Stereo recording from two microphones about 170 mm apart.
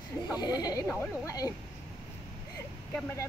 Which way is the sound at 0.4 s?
25° left (ahead or behind).